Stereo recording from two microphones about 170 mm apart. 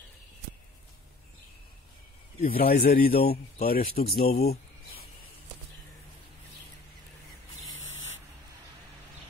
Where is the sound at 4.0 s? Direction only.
50° left (ahead or behind).